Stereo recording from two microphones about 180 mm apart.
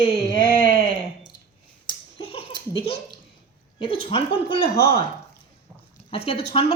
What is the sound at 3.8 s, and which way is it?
Speech, 30° left (ahead or behind).